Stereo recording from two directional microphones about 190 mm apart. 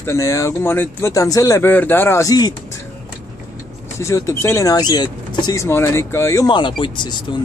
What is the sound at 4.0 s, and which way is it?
Speech, 15° left (ahead or behind).